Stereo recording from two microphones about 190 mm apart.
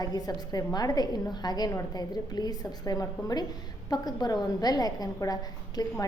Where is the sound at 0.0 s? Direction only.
20° left (ahead or behind).